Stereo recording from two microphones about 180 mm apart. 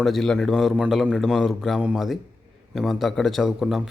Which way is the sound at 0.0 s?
Centre (ahead or behind).